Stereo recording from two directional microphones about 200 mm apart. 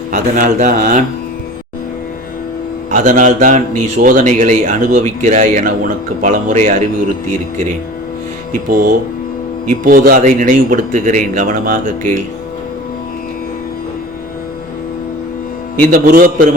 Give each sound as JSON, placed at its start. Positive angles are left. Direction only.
{"t": 0.1, "sound": "a man's voice", "side_deg": -40}
{"t": 2.9, "sound": "a man's voice", "side_deg": -40}
{"t": 9.6, "sound": "a man's voice", "side_deg": -45}
{"t": 15.9, "sound": "a man's voice", "side_deg": -45}